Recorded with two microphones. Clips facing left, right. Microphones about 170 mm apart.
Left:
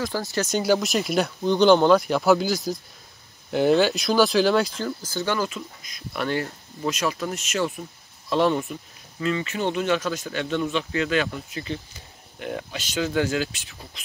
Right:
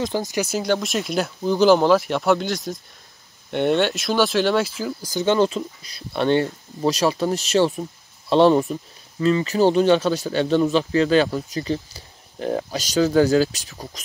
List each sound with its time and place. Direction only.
0.0 s speech: 20° right (ahead or behind)
0.6 s speech: centre (ahead or behind); by 14.0 s 40° right (ahead or behind)